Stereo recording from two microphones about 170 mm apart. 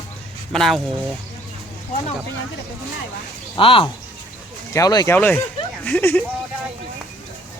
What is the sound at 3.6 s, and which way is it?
Speech, 30° left (ahead or behind).